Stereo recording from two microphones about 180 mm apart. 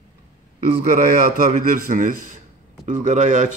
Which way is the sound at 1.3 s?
50° right (ahead or behind).